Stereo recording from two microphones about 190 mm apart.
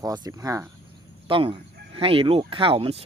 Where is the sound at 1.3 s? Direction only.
30° right (ahead or behind).